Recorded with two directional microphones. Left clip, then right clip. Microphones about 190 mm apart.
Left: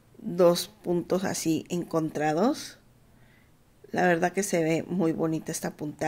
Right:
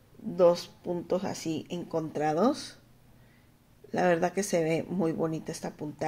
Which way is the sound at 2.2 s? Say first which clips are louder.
Right 1 dB; 10° left (ahead or behind).